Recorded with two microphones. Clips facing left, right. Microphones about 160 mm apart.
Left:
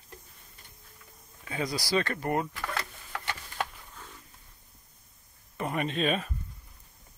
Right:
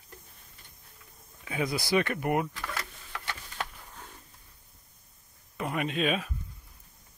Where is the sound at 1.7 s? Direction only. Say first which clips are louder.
Right 2 dB; 20° right (ahead or behind).